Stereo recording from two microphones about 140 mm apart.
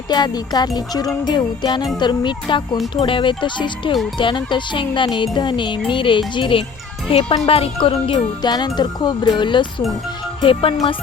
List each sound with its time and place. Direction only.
0.1 s music: 30° left (ahead or behind)
2.0 s speech: 35° left (ahead or behind)